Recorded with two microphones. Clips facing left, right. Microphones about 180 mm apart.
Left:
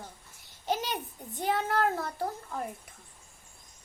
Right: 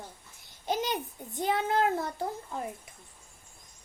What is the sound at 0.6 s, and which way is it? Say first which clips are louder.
A child's voice: right 1 dB; 15° right (ahead or behind).